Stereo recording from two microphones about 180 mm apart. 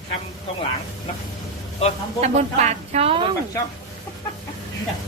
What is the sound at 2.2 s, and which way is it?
A woman's voice, 40° right (ahead or behind).